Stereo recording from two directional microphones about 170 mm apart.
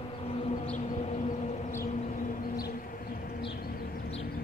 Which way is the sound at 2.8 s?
60° left (ahead or behind).